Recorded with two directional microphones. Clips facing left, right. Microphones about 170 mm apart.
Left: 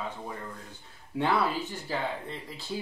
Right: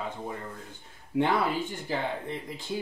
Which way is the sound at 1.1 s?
15° right (ahead or behind).